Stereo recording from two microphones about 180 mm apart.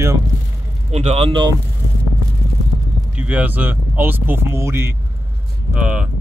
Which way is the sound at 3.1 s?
10° right (ahead or behind).